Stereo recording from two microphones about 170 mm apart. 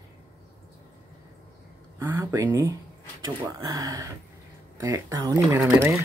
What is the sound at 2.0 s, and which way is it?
Speech, 20° right (ahead or behind).